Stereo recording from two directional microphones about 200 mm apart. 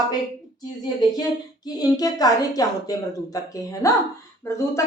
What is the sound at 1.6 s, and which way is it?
A woman's voice, 20° left (ahead or behind).